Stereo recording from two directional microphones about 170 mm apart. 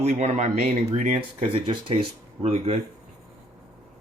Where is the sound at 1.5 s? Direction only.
30° right (ahead or behind).